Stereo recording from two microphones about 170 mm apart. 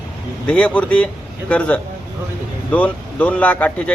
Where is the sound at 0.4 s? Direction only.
5° left (ahead or behind).